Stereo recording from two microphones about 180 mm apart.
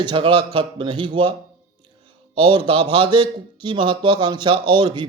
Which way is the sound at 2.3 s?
30° right (ahead or behind).